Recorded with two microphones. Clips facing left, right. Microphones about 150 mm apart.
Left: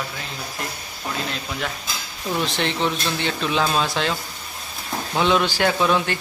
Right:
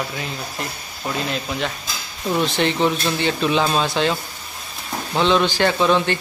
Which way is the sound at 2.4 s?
Centre (ahead or behind).